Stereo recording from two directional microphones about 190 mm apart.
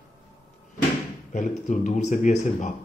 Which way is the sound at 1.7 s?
40° left (ahead or behind).